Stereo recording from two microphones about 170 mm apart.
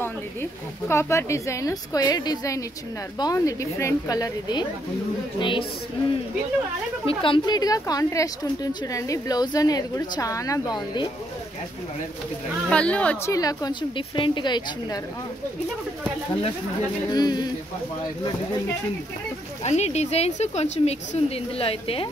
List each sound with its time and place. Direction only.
0.0 s speech: 15° left (ahead or behind)
7.2 s speech: 25° left (ahead or behind)
12.6 s speech: 5° left (ahead or behind)
13.3 s speech: 20° left (ahead or behind)
17.1 s speech: 25° left (ahead or behind)
19.6 s speech: 40° left (ahead or behind)